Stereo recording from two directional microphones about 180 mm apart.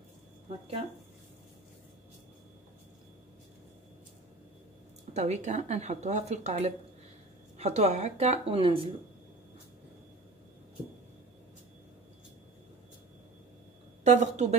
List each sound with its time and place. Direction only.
0.5 s speech: 35° right (ahead or behind)
5.1 s speech: 40° right (ahead or behind)
14.0 s a woman's voice: 40° right (ahead or behind)